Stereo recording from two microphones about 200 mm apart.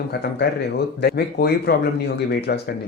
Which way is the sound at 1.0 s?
50° left (ahead or behind).